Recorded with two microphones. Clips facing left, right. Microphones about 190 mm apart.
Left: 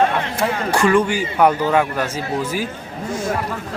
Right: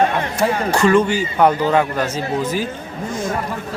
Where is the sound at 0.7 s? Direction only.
10° left (ahead or behind).